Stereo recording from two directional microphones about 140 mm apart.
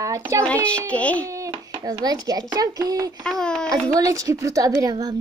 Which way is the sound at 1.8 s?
25° right (ahead or behind).